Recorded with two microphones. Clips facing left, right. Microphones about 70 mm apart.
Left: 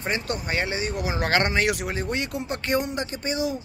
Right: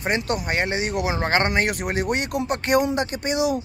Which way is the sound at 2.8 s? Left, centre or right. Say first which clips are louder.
Right 6 dB; right.